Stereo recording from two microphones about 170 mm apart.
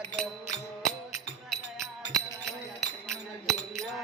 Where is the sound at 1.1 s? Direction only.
Centre (ahead or behind).